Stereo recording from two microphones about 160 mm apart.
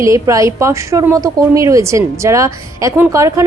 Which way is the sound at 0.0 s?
20° right (ahead or behind).